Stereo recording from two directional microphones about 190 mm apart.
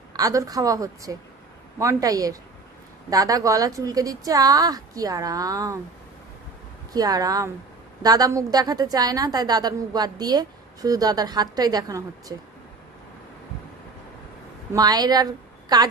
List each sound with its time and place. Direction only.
0.1 s a woman's voice: 20° right (ahead or behind)
6.9 s a woman's voice: 20° right (ahead or behind)
14.7 s a woman's voice: 20° right (ahead or behind)